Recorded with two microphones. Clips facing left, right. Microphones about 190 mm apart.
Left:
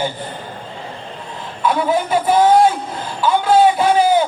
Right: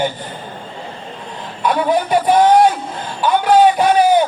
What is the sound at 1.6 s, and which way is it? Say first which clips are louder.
Speech: right 1 dB; 15° right (ahead or behind).